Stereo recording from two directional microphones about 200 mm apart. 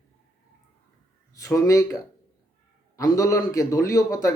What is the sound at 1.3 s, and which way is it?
Speech, 15° left (ahead or behind).